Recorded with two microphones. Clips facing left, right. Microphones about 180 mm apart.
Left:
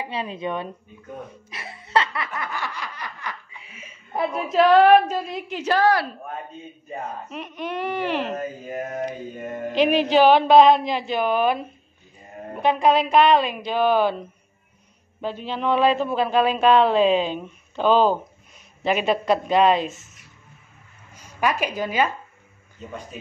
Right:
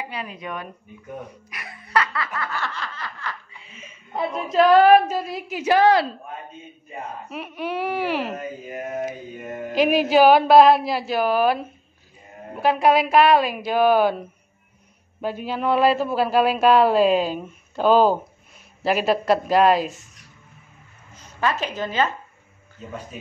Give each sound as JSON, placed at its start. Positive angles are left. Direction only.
{"t": 0.0, "sound": "speech", "side_deg": 25}
{"t": 1.5, "sound": "snicker", "side_deg": 25}
{"t": 7.2, "sound": "a man's voice", "side_deg": -5}
{"t": 9.8, "sound": "a woman's voice", "side_deg": -10}
{"t": 21.4, "sound": "a woman's voice", "side_deg": 15}